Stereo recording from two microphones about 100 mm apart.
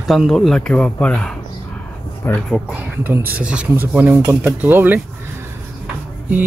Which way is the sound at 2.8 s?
15° right (ahead or behind).